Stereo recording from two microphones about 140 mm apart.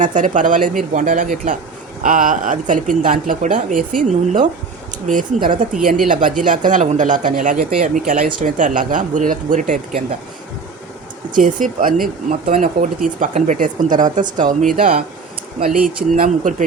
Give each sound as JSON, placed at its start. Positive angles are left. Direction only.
{"t": 0.0, "sound": "speech", "side_deg": -65}
{"t": 11.3, "sound": "speech", "side_deg": -70}
{"t": 12.5, "sound": "speech", "side_deg": -75}
{"t": 14.8, "sound": "speech", "side_deg": -90}